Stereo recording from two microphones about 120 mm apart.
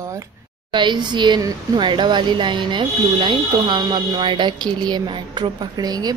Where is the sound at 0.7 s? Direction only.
40° right (ahead or behind).